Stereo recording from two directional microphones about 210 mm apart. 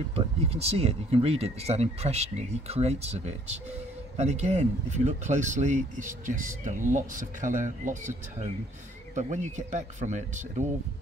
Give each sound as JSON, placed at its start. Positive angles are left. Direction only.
{"t": 0.1, "sound": "speech", "side_deg": -30}